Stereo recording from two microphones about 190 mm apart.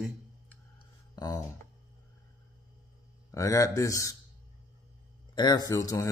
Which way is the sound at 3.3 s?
15° left (ahead or behind).